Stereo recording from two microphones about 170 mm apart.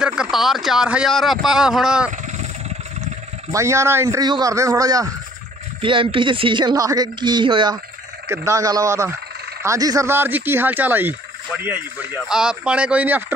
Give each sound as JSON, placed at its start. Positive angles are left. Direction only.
{"t": 0.0, "sound": "speech", "side_deg": -5}
{"t": 3.5, "sound": "speech", "side_deg": -15}
{"t": 5.8, "sound": "speech", "side_deg": -30}